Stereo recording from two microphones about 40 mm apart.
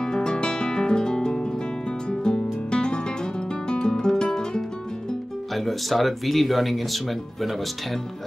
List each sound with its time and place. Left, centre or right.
0.0 s guitar: centre
5.5 s speech: centre